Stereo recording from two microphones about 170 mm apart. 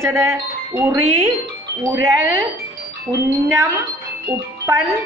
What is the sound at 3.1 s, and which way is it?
Speech, 15° right (ahead or behind).